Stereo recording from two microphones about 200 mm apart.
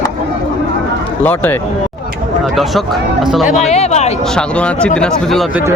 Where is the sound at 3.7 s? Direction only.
35° left (ahead or behind).